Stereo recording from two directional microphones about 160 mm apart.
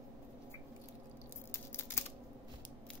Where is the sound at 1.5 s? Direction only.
15° left (ahead or behind).